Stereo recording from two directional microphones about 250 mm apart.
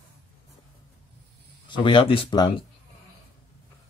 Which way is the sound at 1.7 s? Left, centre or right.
Centre.